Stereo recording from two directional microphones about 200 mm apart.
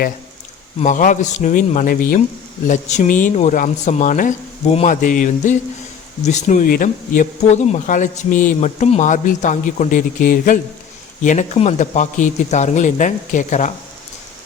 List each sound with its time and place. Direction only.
0.8 s speech: 40° left (ahead or behind)